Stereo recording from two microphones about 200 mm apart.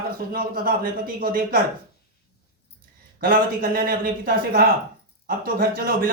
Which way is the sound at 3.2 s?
45° right (ahead or behind).